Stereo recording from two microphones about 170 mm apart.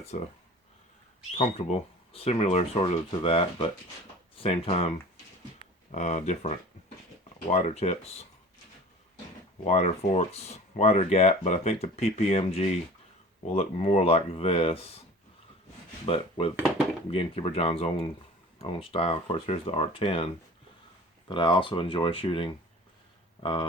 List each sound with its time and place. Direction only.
0.0 s speech: 40° left (ahead or behind)
1.4 s speech: 40° left (ahead or behind)
9.6 s speech: 40° left (ahead or behind)
16.0 s speech: 35° left (ahead or behind)